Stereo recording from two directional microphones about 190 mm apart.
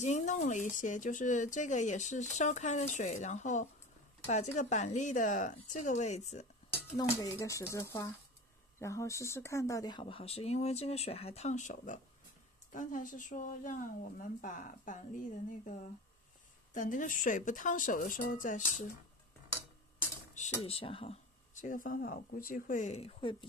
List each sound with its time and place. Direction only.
0.0 s speech: 40° left (ahead or behind)
7.0 s a woman's voice: 20° left (ahead or behind); by 18.9 s 40° left (ahead or behind)
20.6 s speech: 30° left (ahead or behind)